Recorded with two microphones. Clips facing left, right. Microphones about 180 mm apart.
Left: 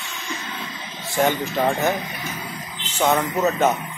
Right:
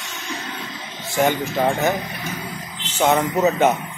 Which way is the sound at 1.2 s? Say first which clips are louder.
Right 1 dB; 10° right (ahead or behind).